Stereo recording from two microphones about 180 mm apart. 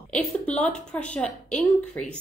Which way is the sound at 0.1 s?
5° left (ahead or behind).